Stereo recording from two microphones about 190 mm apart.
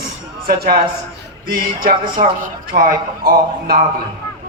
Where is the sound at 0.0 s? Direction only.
55° right (ahead or behind).